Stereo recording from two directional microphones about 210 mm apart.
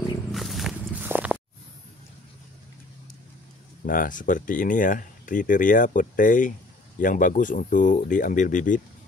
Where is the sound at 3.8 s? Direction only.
40° left (ahead or behind).